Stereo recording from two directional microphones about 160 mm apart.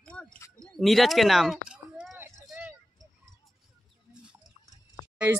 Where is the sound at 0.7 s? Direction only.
Centre (ahead or behind).